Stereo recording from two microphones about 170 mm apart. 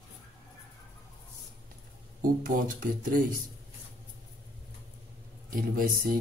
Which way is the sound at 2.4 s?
55° right (ahead or behind).